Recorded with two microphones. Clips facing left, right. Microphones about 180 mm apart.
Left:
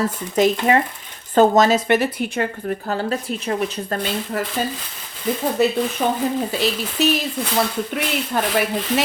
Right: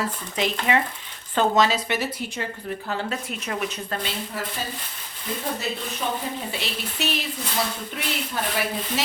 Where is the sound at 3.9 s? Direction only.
50° left (ahead or behind).